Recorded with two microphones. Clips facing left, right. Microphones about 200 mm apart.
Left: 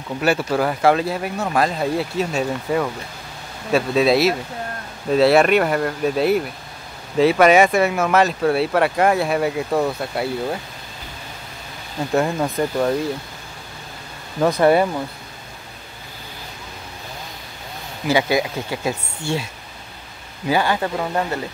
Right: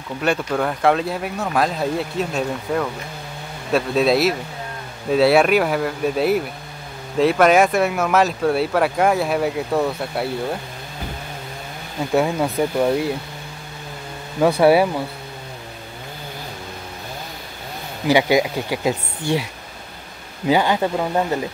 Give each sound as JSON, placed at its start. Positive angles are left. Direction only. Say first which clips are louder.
{"t": 0.2, "sound": "speech", "louder": "left 1 dB", "side_deg": 5}
{"t": 12.1, "sound": "speech", "louder": "right 1 dB", "side_deg": -5}
{"t": 14.4, "sound": "speech", "louder": "right 1 dB", "side_deg": -5}
{"t": 18.0, "sound": "speech", "louder": "right 3 dB", "side_deg": -15}
{"t": 20.4, "sound": "speech", "louder": "right 2 dB", "side_deg": -15}